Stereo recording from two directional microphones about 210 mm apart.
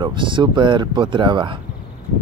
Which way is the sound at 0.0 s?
20° right (ahead or behind).